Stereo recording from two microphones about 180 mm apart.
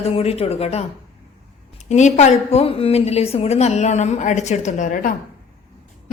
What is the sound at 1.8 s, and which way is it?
A woman's voice, 40° left (ahead or behind).